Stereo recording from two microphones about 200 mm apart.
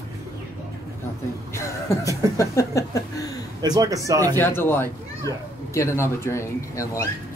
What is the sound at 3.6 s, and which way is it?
Speech, 20° right (ahead or behind).